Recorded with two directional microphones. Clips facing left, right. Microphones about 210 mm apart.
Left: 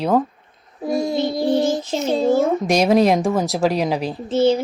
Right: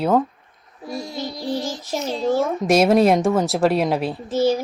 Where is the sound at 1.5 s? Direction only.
20° left (ahead or behind).